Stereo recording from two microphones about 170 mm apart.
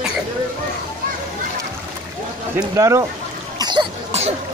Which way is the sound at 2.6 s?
20° right (ahead or behind).